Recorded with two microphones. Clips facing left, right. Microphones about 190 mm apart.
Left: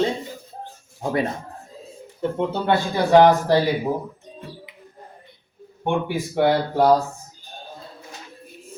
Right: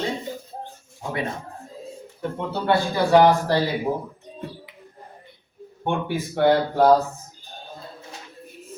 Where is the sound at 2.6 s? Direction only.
20° left (ahead or behind).